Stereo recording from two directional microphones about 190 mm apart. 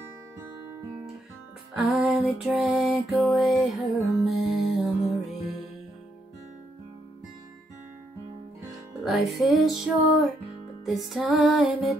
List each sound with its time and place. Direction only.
1.9 s music: 5° right (ahead or behind)
9.0 s music: centre (ahead or behind)